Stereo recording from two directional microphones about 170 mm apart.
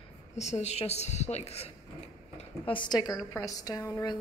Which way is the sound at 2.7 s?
25° left (ahead or behind).